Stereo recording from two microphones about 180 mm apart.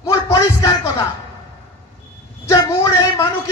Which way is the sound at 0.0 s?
15° left (ahead or behind).